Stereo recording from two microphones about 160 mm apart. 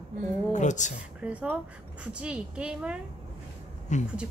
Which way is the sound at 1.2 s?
10° right (ahead or behind).